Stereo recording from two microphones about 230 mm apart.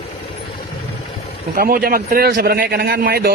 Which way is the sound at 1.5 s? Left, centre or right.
Right.